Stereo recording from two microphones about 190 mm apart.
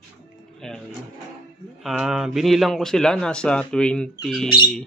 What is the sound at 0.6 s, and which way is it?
Music, centre (ahead or behind).